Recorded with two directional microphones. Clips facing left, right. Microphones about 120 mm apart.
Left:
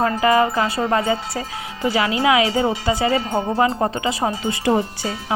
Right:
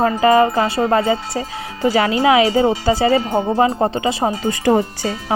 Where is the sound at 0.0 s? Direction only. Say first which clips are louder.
Right 4 dB; 30° right (ahead or behind).